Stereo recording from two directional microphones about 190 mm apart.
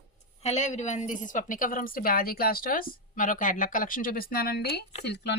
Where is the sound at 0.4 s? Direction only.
40° left (ahead or behind).